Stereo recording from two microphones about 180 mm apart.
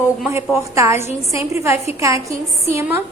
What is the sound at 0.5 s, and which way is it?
A woman's voice, 15° right (ahead or behind).